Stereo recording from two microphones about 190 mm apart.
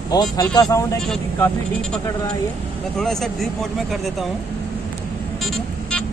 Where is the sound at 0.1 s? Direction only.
20° left (ahead or behind).